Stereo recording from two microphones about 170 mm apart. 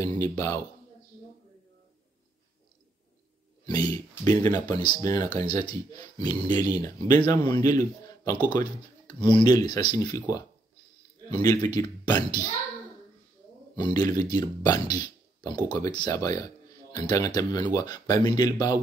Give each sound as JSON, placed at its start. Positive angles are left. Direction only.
{"t": 0.2, "sound": "speech", "side_deg": 20}
{"t": 3.6, "sound": "speech", "side_deg": 25}
{"t": 13.7, "sound": "speech", "side_deg": 25}
{"t": 14.9, "sound": "a sound", "side_deg": 25}
{"t": 15.7, "sound": "speech", "side_deg": 25}